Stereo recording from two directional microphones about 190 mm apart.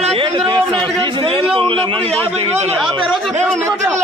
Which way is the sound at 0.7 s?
25° right (ahead or behind).